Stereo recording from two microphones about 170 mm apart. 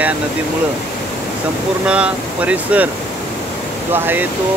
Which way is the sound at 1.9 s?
5° right (ahead or behind).